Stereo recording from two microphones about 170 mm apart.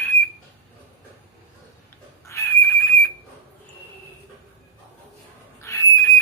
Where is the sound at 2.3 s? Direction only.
15° left (ahead or behind).